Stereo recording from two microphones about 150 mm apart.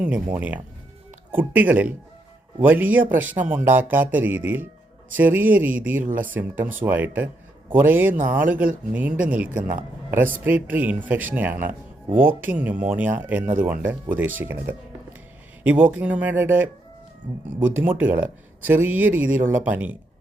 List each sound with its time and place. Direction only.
0.3 s speech: 10° right (ahead or behind)